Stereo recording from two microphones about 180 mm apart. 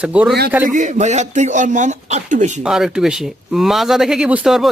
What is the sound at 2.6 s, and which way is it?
Speech, 5° right (ahead or behind).